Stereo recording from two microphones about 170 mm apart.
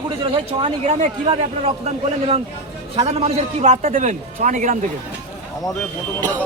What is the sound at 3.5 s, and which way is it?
Speech, 40° right (ahead or behind).